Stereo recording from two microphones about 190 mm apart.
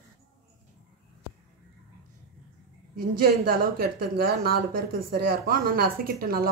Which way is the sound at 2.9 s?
50° right (ahead or behind).